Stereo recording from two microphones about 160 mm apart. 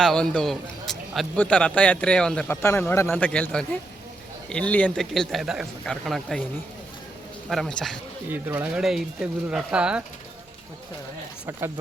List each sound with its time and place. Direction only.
0.0 s a man's voice: 5° left (ahead or behind)
2.6 s speech: 15° left (ahead or behind); by 6.4 s centre (ahead or behind)
7.5 s speech: 5° left (ahead or behind)
8.3 s speech: 15° right (ahead or behind)